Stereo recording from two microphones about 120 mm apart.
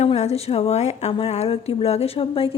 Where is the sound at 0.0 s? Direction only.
60° left (ahead or behind).